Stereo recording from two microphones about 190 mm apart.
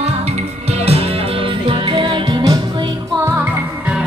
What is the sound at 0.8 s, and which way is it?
Music, 30° right (ahead or behind).